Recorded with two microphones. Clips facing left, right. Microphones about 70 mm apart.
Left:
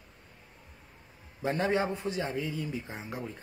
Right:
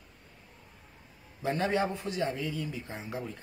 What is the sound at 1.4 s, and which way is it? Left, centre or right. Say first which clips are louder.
Speech: even; left.